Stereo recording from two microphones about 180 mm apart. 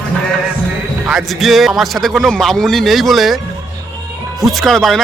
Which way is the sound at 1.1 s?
Centre (ahead or behind).